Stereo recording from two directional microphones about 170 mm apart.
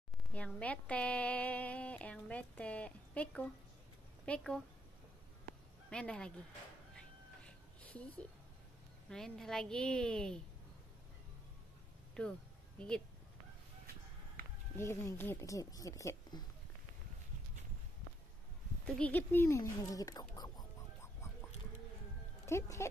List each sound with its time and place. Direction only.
0.3 s a woman's voice: 10° left (ahead or behind)
5.9 s a woman's voice: 5° left (ahead or behind)
7.0 s cat: 5° left (ahead or behind)
9.1 s a woman's voice: centre (ahead or behind)
12.2 s a woman's voice: 5° left (ahead or behind)
14.8 s speech: 15° left (ahead or behind)
18.9 s speech: 5° left (ahead or behind)
22.5 s speech: 15° left (ahead or behind)